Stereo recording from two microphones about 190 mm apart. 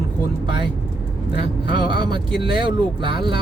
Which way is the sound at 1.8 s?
25° right (ahead or behind).